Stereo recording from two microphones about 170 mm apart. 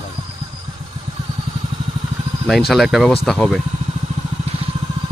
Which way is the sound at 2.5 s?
Centre (ahead or behind).